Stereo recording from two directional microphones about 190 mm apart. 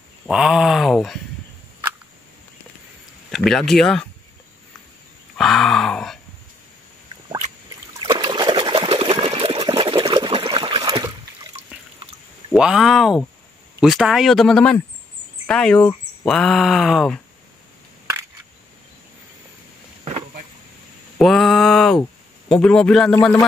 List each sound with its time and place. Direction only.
0.3 s speech: 5° right (ahead or behind)
3.3 s speech: centre (ahead or behind)
5.4 s grunt: centre (ahead or behind)
8.0 s trickle: 25° right (ahead or behind)
12.5 s speech: 5° right (ahead or behind)
21.2 s a sound: centre (ahead or behind)
22.5 s speech: 5° left (ahead or behind)